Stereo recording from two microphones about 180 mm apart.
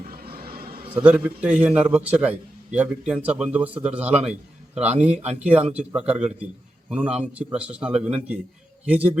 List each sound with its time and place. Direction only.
0.1 s vehicle: 55° right (ahead or behind)
0.9 s a man's voice: 10° right (ahead or behind)